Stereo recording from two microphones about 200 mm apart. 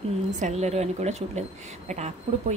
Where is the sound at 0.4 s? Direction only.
35° right (ahead or behind).